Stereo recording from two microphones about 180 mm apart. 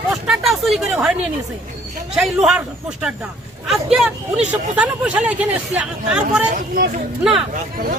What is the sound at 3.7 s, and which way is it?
Speech, 5° right (ahead or behind).